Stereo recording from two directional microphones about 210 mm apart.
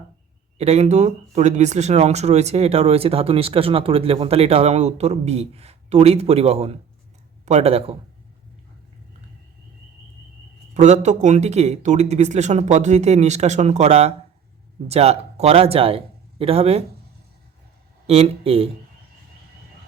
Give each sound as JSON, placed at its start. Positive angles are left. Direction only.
{"t": 0.6, "sound": "speech", "side_deg": -30}
{"t": 10.8, "sound": "a man's voice", "side_deg": -35}
{"t": 18.0, "sound": "speech", "side_deg": -30}